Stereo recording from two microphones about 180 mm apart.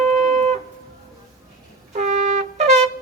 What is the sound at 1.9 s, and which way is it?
Trumpet, 40° right (ahead or behind).